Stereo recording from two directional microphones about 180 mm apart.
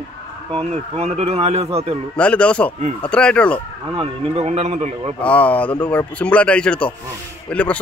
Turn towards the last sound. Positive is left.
turn(degrees=10)  # may be behind; listen again after turning